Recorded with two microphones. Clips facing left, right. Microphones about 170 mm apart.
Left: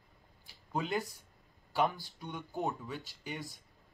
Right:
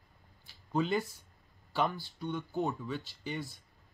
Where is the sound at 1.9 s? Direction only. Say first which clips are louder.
Right 6 dB; 15° left (ahead or behind).